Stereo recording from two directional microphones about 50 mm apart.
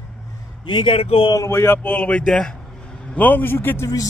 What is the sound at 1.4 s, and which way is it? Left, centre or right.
Speech, left.